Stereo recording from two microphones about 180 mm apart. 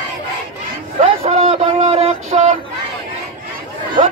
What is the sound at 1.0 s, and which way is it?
Speech, 35° right (ahead or behind).